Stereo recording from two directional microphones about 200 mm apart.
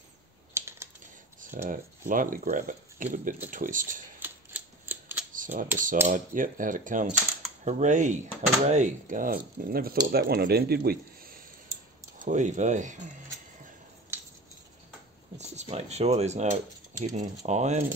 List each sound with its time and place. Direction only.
0.6 s computer keyboard: 15° right (ahead or behind)
1.4 s speech: 40° right (ahead or behind)
4.2 s typewriter: 10° right (ahead or behind)
5.3 s a sound: 40° right (ahead or behind)
6.0 s speech: 40° right (ahead or behind)
15.3 s speech: 35° right (ahead or behind)